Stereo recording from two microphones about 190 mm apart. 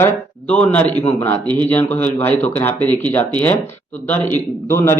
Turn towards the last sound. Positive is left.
turn(degrees=15)  # may be behind; listen again after turning